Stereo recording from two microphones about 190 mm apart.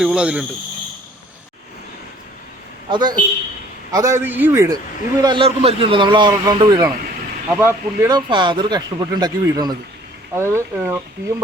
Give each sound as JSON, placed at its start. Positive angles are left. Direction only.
{"t": 0.0, "sound": "speech", "side_deg": -5}
{"t": 2.9, "sound": "speech", "side_deg": -20}
{"t": 5.2, "sound": "speech", "side_deg": -25}